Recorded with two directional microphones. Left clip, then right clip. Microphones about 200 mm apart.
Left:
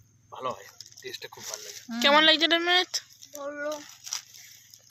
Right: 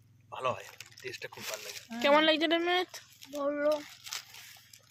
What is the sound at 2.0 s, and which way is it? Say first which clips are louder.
Speech: left 5 dB; centre (ahead or behind).